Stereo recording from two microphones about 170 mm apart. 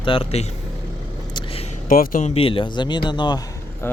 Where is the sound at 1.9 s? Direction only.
55° left (ahead or behind).